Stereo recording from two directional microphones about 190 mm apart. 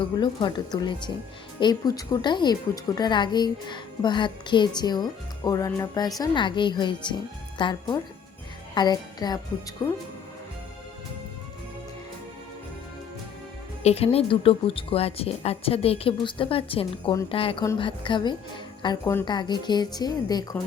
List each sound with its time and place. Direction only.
0.0 s a woman's voice: 25° left (ahead or behind)
13.8 s a woman's voice: 30° left (ahead or behind)